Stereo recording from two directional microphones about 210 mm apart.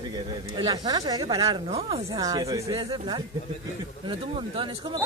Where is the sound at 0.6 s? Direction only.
20° right (ahead or behind).